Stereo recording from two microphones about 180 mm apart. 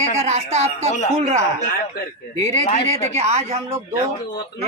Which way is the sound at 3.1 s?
35° right (ahead or behind).